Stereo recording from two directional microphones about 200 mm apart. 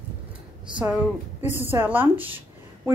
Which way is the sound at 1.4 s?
10° right (ahead or behind).